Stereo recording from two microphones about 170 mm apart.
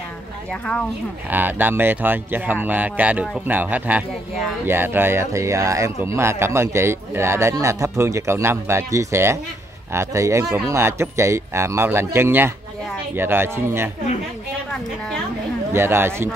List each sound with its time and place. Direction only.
0.5 s speech: 5° left (ahead or behind)
1.3 s speech: 10° right (ahead or behind)
15.7 s speech: 15° right (ahead or behind)